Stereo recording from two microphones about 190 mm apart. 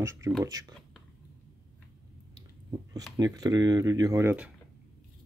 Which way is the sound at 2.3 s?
20° right (ahead or behind).